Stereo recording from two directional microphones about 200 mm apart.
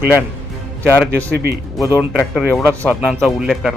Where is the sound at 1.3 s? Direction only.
55° right (ahead or behind).